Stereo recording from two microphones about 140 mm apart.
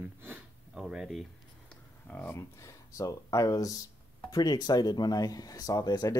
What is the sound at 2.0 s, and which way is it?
Speech, 10° left (ahead or behind).